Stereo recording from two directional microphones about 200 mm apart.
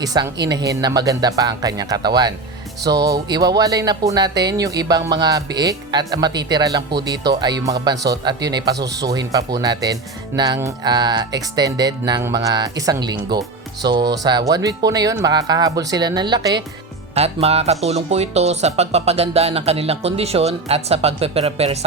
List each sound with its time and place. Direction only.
0.0 s speech: 20° right (ahead or behind)
17.2 s speech: 30° right (ahead or behind)